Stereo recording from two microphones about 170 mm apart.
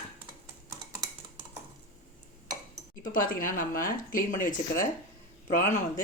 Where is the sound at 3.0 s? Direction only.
55° left (ahead or behind).